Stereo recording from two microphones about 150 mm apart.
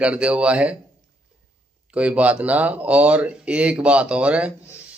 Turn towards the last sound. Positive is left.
turn(degrees=-10)  # may be behind; listen again after turning